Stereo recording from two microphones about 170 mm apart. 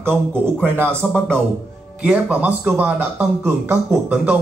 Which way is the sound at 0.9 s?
5° left (ahead or behind).